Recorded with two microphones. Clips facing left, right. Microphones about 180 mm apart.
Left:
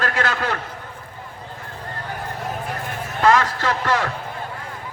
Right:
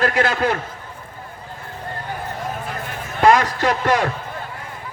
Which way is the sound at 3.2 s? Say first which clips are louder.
Right 3 dB; 15° right (ahead or behind).